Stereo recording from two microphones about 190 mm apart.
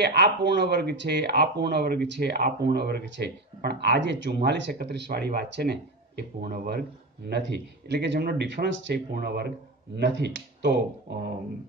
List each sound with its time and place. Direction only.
0.0 s speech: 60° right (ahead or behind)
9.1 s speech: 55° right (ahead or behind)